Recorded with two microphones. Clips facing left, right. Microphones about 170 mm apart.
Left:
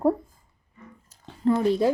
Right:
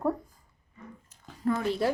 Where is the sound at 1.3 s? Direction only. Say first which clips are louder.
Left 6 dB; 25° left (ahead or behind).